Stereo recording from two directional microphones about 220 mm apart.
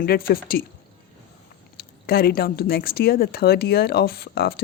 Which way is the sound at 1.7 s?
45° left (ahead or behind).